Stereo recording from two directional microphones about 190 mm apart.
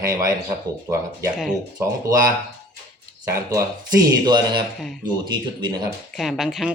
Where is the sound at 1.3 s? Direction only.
Centre (ahead or behind).